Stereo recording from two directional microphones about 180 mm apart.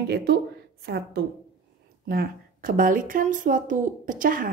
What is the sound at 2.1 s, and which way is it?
A woman's voice, 50° right (ahead or behind).